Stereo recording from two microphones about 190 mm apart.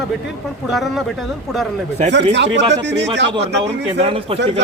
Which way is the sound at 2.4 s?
65° right (ahead or behind).